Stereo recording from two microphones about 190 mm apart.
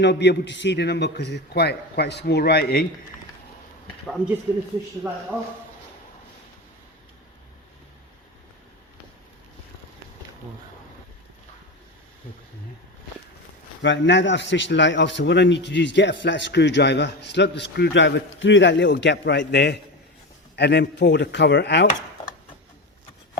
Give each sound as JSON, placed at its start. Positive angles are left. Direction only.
{"t": 0.0, "sound": "a man's voice", "side_deg": 65}
{"t": 5.0, "sound": "a man's voice", "side_deg": -5}
{"t": 13.8, "sound": "a man's voice", "side_deg": 75}